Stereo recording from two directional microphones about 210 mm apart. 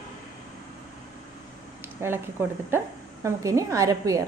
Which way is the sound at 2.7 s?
10° right (ahead or behind).